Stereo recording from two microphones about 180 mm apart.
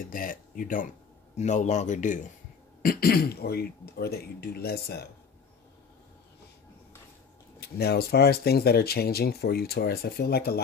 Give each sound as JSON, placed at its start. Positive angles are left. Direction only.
{"t": 0.0, "sound": "a man's voice", "side_deg": 50}
{"t": 2.8, "sound": "speech", "side_deg": 55}
{"t": 7.6, "sound": "speech", "side_deg": 60}